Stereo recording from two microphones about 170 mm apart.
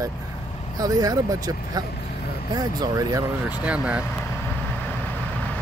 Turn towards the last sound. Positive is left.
turn(degrees=-5)  # may be behind; listen again after turning